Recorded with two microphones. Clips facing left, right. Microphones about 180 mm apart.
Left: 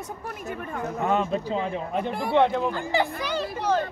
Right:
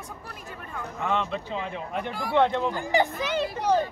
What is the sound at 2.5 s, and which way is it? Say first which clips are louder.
Speech: left 1 dB; 5° left (ahead or behind).